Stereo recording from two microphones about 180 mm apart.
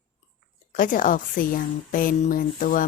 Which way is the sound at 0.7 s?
50° left (ahead or behind).